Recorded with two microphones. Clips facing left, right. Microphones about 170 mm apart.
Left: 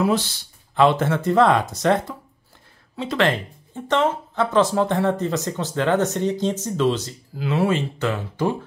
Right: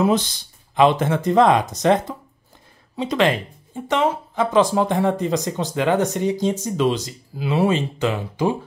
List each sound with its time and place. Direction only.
0.0 s speech: 15° right (ahead or behind)